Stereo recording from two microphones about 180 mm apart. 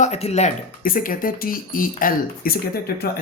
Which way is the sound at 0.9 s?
50° left (ahead or behind).